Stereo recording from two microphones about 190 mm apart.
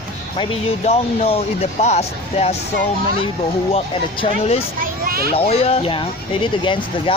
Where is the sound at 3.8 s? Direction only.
30° left (ahead or behind).